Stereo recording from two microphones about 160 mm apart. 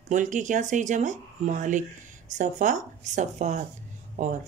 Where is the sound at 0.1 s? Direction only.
50° right (ahead or behind).